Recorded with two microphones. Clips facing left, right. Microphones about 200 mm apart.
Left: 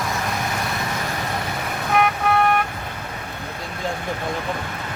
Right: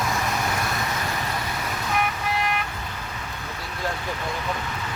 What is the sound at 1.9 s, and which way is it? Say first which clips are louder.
Vehicle: left 8 dB; 60° left (ahead or behind).